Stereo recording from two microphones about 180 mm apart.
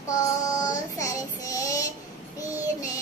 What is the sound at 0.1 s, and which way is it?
Child singing, 20° left (ahead or behind).